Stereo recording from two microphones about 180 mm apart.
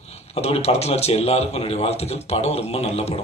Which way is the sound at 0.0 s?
35° left (ahead or behind).